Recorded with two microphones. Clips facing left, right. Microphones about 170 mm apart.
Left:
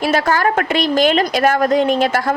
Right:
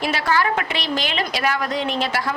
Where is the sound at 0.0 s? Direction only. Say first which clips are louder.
Left 5 dB; 45° left (ahead or behind).